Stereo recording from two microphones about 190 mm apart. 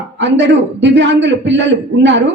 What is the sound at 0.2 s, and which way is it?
A man's voice, 70° right (ahead or behind).